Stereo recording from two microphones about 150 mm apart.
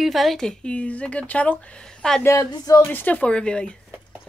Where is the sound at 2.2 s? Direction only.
25° left (ahead or behind).